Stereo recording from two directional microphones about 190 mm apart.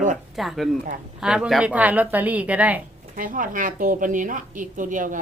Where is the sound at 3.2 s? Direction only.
45° right (ahead or behind).